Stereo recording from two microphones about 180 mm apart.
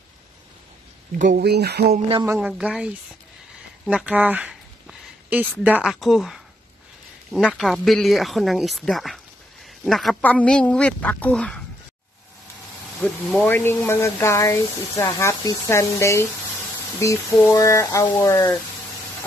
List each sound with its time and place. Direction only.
1.1 s speech: 45° right (ahead or behind)
1.4 s speech: 65° right (ahead or behind)
2.3 s a woman's voice: 5° right (ahead or behind)
3.8 s a sound: 5° right (ahead or behind)
5.6 s a woman's voice: 5° right (ahead or behind)
13.0 s speech: 5° left (ahead or behind)